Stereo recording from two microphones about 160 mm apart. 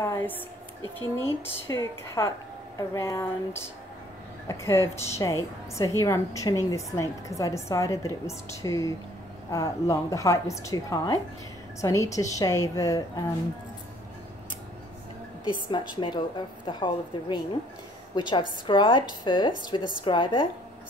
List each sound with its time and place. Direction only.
0.0 s a woman's voice: 15° left (ahead or behind)
15.9 s a woman's voice: 30° left (ahead or behind)